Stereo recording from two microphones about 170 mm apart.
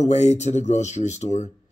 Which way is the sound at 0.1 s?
45° left (ahead or behind).